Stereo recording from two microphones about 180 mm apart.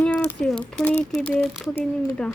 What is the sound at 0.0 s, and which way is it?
Speech, 10° left (ahead or behind).